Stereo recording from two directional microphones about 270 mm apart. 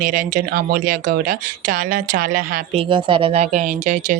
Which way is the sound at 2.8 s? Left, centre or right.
Centre.